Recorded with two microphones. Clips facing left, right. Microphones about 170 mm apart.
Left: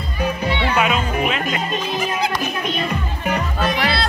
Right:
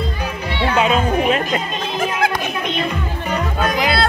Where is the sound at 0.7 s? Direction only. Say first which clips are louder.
Right 6 dB; 30° right (ahead or behind).